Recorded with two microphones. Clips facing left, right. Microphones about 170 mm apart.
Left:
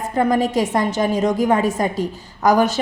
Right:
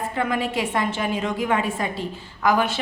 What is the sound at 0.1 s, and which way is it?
A woman's voice, 40° left (ahead or behind).